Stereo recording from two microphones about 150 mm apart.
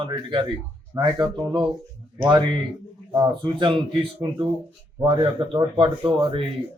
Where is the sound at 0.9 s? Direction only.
20° right (ahead or behind).